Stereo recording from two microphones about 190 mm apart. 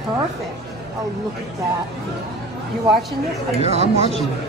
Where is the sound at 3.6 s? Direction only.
35° right (ahead or behind).